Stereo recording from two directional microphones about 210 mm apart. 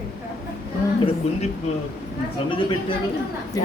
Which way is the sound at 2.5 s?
25° left (ahead or behind).